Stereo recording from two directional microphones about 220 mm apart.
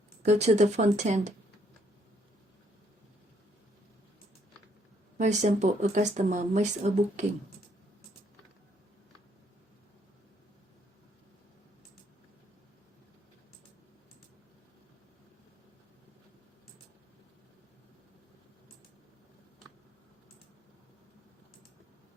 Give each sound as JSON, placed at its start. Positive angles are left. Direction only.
{"t": 0.2, "sound": "speech", "side_deg": -30}
{"t": 5.1, "sound": "speech", "side_deg": -30}